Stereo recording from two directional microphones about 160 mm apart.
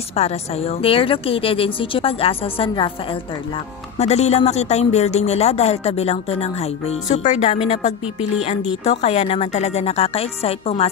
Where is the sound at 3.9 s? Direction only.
45° left (ahead or behind).